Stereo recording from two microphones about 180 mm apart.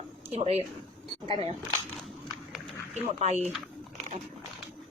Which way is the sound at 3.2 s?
40° right (ahead or behind).